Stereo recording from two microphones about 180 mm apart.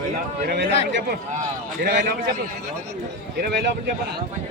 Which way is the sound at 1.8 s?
55° right (ahead or behind).